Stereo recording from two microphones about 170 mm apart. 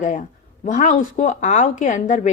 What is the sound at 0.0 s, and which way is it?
Speech, 45° left (ahead or behind).